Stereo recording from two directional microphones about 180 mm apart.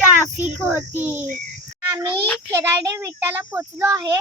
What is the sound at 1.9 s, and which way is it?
A child's voice, 20° right (ahead or behind).